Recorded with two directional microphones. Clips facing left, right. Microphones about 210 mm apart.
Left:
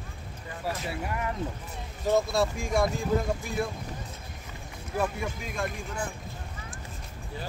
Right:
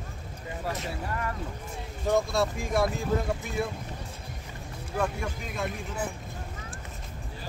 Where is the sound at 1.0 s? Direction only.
15° left (ahead or behind).